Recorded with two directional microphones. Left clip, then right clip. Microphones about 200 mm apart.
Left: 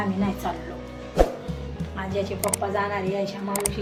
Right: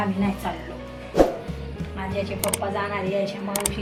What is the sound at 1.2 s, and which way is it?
Music, centre (ahead or behind).